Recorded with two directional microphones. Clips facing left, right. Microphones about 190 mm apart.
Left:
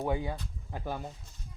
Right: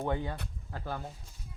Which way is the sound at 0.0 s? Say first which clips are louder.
Left 1 dB; 10° left (ahead or behind).